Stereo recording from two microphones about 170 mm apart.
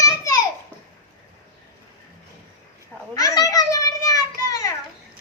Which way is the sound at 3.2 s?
20° left (ahead or behind).